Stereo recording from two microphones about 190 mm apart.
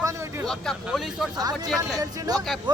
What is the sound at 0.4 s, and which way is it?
Speech, 5° left (ahead or behind).